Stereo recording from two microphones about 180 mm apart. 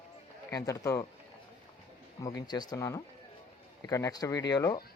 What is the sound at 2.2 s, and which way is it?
Speech, 20° left (ahead or behind).